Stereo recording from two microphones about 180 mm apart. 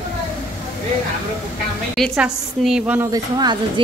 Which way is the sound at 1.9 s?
Centre (ahead or behind).